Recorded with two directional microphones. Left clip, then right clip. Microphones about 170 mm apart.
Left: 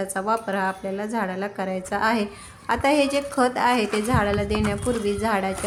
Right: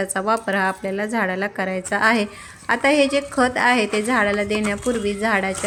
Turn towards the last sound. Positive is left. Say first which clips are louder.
# right 3 dB
turn(degrees=-10)  # may be behind; listen again after turning